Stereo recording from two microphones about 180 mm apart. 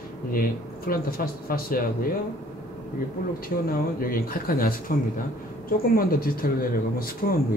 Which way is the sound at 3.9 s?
55° left (ahead or behind).